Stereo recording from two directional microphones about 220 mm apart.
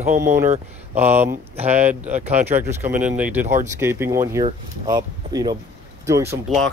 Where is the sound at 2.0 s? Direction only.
35° right (ahead or behind).